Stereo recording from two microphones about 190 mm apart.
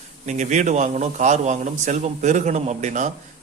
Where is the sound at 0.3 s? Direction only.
40° right (ahead or behind).